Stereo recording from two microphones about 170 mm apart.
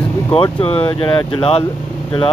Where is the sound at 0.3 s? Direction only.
30° left (ahead or behind).